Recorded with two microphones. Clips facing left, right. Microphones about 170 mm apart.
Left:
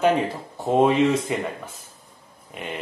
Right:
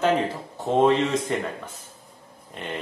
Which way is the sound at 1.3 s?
10° left (ahead or behind).